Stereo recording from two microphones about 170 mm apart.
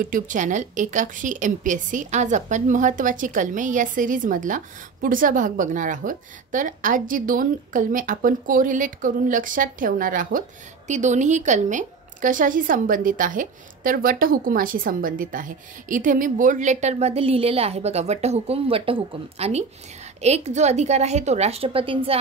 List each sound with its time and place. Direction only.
0.0 s a woman's voice: 50° right (ahead or behind); by 22.2 s 30° right (ahead or behind)